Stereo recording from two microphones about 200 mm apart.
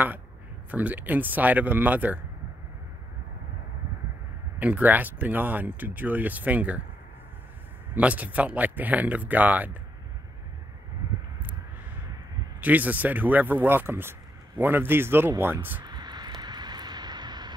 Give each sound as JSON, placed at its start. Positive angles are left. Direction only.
{"t": 0.7, "sound": "speech", "side_deg": -10}
{"t": 4.6, "sound": "speech", "side_deg": -10}
{"t": 7.9, "sound": "speech", "side_deg": -5}
{"t": 12.5, "sound": "speech", "side_deg": -10}
{"t": 15.8, "sound": "vehicle", "side_deg": -20}